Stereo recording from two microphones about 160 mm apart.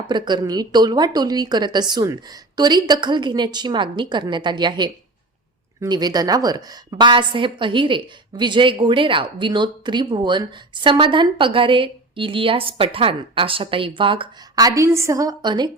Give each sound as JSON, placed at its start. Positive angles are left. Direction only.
{"t": 0.1, "sound": "a woman's voice", "side_deg": -30}